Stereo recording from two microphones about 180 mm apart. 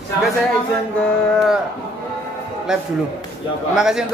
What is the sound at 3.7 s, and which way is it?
Speech, 5° right (ahead or behind).